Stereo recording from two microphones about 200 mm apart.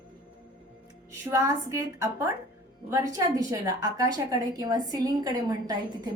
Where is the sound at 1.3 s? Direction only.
15° right (ahead or behind).